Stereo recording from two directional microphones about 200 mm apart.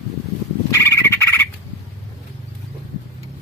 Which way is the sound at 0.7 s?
15° left (ahead or behind).